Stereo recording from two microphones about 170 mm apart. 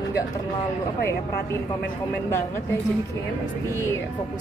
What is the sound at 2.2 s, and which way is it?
Speech, 15° left (ahead or behind).